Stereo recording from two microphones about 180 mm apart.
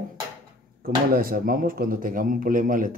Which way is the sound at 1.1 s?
55° right (ahead or behind).